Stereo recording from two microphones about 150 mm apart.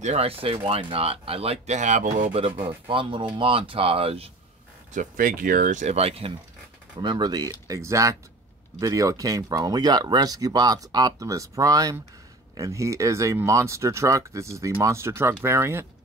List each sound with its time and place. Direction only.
0.0 s speech: 45° right (ahead or behind)
2.6 s speech: 35° right (ahead or behind)
4.9 s speech: 65° right (ahead or behind); by 6.3 s 40° right (ahead or behind)
7.0 s speech: 30° right (ahead or behind)